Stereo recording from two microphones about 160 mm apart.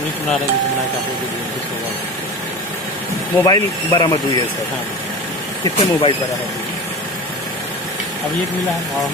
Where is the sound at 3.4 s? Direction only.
25° left (ahead or behind).